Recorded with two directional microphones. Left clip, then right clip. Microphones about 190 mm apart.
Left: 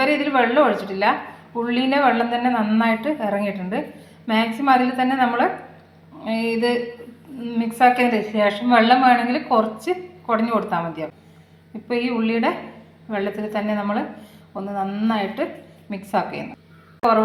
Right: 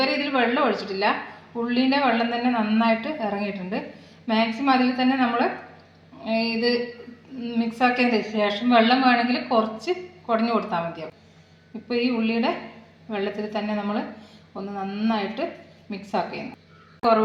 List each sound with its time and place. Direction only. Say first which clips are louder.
0.0 s a woman's voice: left 4 dB; 15° left (ahead or behind)